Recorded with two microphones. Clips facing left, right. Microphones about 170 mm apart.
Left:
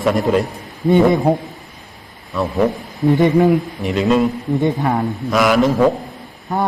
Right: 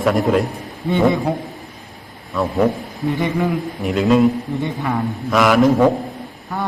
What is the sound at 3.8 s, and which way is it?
Speech, centre (ahead or behind).